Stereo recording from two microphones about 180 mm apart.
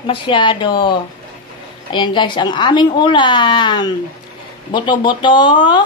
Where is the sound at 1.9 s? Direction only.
25° left (ahead or behind).